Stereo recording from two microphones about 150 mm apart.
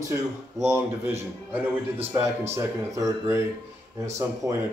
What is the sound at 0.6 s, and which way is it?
Speech, 20° right (ahead or behind).